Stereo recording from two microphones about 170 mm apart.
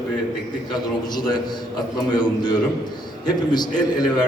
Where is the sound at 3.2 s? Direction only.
25° left (ahead or behind).